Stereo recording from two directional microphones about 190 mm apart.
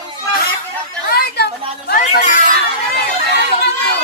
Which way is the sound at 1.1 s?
55° left (ahead or behind).